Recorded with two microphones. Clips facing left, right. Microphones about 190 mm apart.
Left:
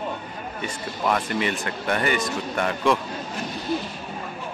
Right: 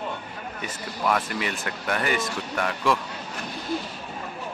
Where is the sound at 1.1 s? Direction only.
Centre (ahead or behind).